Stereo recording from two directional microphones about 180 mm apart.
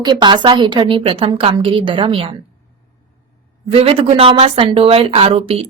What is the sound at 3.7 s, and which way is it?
A woman's voice, 30° right (ahead or behind).